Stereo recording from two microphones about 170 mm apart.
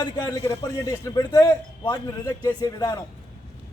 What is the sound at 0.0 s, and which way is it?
A man's voice, 25° left (ahead or behind).